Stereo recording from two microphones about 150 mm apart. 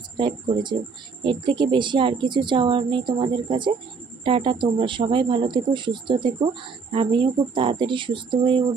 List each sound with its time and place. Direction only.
0.2 s speech: 35° right (ahead or behind)